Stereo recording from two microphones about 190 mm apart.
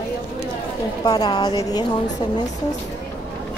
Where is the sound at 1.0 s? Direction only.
20° left (ahead or behind).